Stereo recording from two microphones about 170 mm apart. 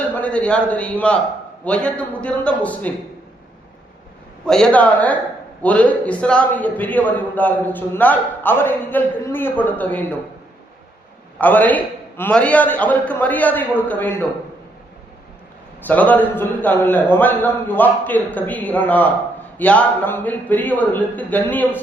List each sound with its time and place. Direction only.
0.2 s a man's voice: 5° left (ahead or behind)
4.4 s a man's voice: 5° left (ahead or behind)
11.3 s a man's voice: 10° left (ahead or behind)
15.9 s a man's voice: 10° left (ahead or behind)